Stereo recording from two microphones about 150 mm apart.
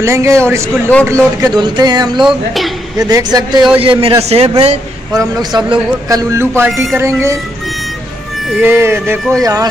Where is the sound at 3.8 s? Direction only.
40° right (ahead or behind).